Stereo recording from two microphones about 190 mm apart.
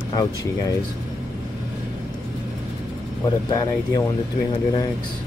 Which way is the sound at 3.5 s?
20° left (ahead or behind).